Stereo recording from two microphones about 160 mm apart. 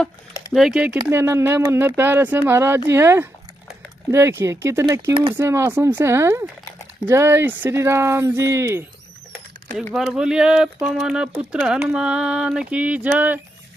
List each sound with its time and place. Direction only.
0.5 s speech: centre (ahead or behind)
1.0 s speech: 15° right (ahead or behind)
9.9 s speech: 5° right (ahead or behind)